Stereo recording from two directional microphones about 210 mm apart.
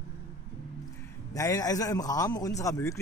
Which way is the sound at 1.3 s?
15° left (ahead or behind).